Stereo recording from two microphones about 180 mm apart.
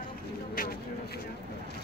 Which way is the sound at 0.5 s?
55° left (ahead or behind).